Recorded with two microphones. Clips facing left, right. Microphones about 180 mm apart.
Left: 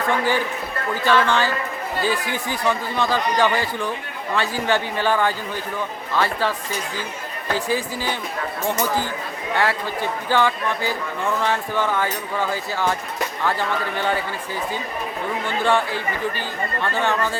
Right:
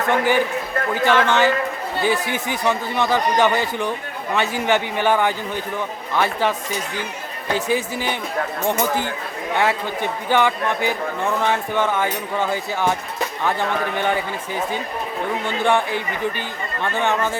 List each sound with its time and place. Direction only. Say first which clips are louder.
0.1 s a man's voice: right 5 dB; 15° right (ahead or behind)
9.6 s speech: right 2 dB; 20° right (ahead or behind)
15.6 s speech: right 1 dB; 20° right (ahead or behind)